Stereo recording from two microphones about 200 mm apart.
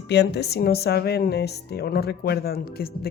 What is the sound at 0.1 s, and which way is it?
Speech, 60° left (ahead or behind).